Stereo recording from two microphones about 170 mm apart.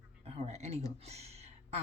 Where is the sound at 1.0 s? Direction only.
40° right (ahead or behind).